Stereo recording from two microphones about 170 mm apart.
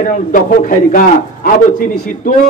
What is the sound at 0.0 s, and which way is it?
A man's voice, 50° left (ahead or behind).